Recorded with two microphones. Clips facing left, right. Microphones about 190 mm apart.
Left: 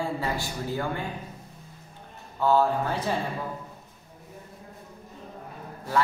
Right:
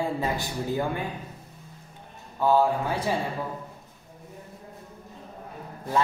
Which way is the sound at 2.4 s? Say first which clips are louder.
Right 1 dB; 15° right (ahead or behind).